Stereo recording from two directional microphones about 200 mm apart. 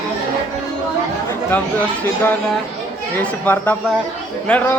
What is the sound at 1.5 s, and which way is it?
A man's voice, 10° left (ahead or behind).